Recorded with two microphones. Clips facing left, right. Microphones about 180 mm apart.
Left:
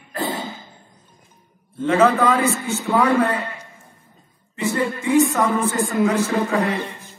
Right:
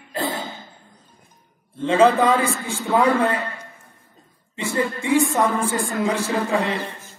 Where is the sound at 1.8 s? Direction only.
30° right (ahead or behind).